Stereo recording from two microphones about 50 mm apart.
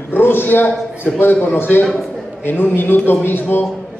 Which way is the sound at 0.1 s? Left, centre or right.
Left.